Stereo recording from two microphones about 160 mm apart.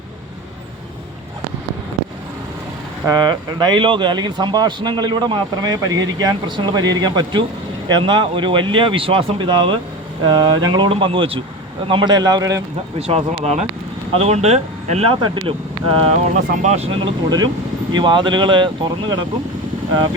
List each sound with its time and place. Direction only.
3.1 s a man's voice: 25° right (ahead or behind)
13.0 s speech: 40° right (ahead or behind)
16.3 s speech: 50° right (ahead or behind)
17.0 s a man's voice: 25° right (ahead or behind)